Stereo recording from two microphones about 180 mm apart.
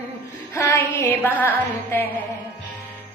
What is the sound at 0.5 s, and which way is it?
Music, 15° left (ahead or behind).